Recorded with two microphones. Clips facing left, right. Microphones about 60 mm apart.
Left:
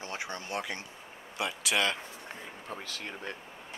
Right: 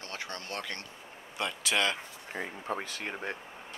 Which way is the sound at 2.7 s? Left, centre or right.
Right.